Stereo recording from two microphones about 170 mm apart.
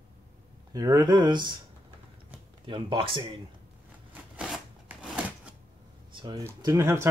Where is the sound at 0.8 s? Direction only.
20° right (ahead or behind).